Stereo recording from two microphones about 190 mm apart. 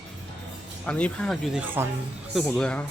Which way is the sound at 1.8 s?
10° right (ahead or behind).